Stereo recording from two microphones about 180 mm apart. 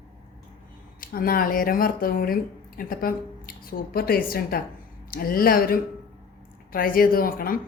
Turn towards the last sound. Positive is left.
turn(degrees=50)  # may be behind; listen again after turning